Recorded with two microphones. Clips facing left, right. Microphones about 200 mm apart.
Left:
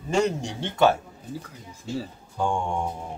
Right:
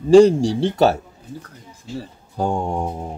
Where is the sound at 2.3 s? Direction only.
35° right (ahead or behind).